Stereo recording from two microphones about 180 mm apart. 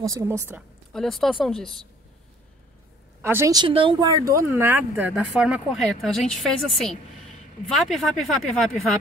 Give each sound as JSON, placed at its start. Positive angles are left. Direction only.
{"t": 0.0, "sound": "speech", "side_deg": -20}
{"t": 0.6, "sound": "a woman's voice", "side_deg": 0}
{"t": 3.2, "sound": "a woman's voice", "side_deg": -10}